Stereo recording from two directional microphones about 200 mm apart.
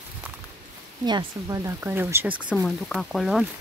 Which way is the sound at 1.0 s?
20° right (ahead or behind).